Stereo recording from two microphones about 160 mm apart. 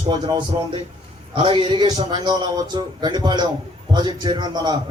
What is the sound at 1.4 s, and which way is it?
A man's voice, 30° right (ahead or behind).